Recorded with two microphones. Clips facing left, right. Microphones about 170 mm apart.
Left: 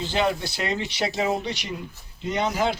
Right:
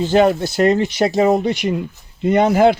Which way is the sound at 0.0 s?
50° right (ahead or behind).